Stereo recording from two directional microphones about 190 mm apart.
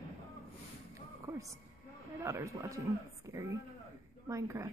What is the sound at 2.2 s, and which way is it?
A woman's voice, 15° right (ahead or behind).